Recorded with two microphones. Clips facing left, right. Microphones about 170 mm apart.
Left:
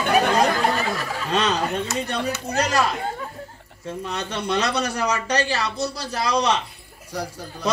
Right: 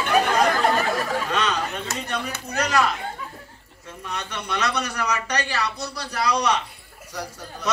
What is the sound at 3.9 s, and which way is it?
A man's voice, 30° left (ahead or behind).